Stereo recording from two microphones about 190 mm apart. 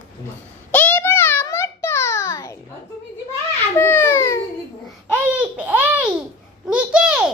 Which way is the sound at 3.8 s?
10° left (ahead or behind).